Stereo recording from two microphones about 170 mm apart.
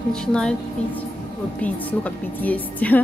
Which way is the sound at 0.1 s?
5° left (ahead or behind).